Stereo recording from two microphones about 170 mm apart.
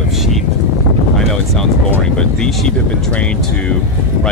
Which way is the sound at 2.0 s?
5° left (ahead or behind).